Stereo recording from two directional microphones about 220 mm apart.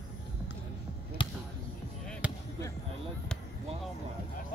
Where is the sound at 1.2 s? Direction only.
25° left (ahead or behind).